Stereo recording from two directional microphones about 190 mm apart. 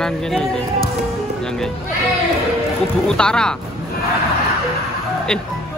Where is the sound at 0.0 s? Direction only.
5° left (ahead or behind).